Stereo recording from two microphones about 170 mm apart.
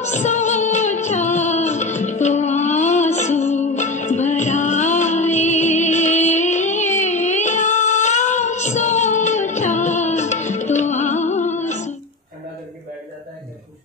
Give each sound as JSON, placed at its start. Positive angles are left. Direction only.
{"t": 0.0, "sound": "music", "side_deg": 45}